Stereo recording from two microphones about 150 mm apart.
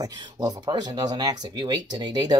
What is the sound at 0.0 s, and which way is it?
Speech, 25° right (ahead or behind).